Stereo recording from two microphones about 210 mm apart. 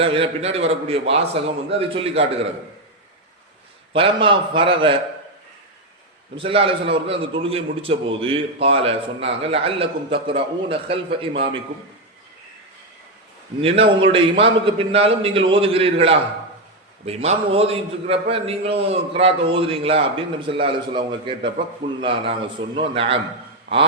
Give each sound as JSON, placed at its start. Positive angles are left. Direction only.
{"t": 0.0, "sound": "a man's voice", "side_deg": -25}
{"t": 3.9, "sound": "a man's voice", "side_deg": -25}
{"t": 6.3, "sound": "a man's voice", "side_deg": -25}
{"t": 13.6, "sound": "a man's voice", "side_deg": -25}